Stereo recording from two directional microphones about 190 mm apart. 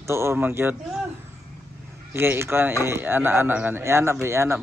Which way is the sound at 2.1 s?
10° right (ahead or behind).